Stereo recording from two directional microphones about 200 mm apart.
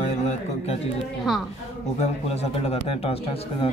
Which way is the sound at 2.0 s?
30° left (ahead or behind).